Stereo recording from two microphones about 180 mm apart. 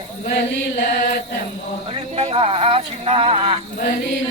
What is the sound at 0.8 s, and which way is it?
Chant, 60° left (ahead or behind).